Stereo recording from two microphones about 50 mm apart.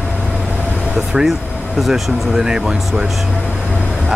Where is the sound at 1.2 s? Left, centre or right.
Centre.